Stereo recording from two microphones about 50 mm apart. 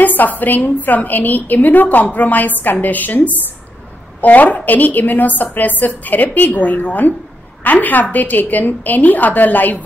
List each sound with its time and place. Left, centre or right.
0.0 s a woman's voice: left